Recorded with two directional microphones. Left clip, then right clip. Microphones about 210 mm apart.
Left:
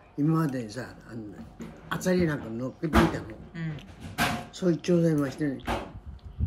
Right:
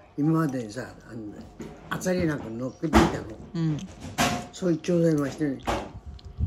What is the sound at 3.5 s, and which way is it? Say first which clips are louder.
Speech: right 12 dB; 15° right (ahead or behind).